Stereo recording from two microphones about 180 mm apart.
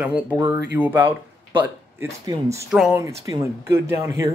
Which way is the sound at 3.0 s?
20° right (ahead or behind).